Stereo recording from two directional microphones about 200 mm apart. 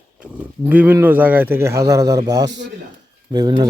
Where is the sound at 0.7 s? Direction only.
10° right (ahead or behind).